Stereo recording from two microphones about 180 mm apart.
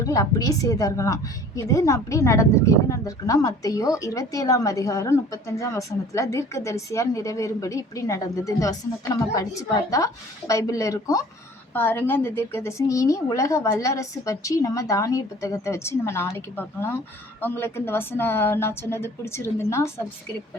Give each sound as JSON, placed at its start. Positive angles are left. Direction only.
{"t": 0.0, "sound": "a woman's voice", "side_deg": 20}